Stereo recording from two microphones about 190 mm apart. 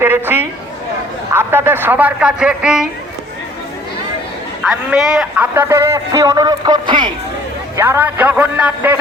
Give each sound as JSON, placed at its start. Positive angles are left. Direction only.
{"t": 0.0, "sound": "a man's voice", "side_deg": -10}
{"t": 4.6, "sound": "a man's voice", "side_deg": -5}
{"t": 7.8, "sound": "a man's voice", "side_deg": -10}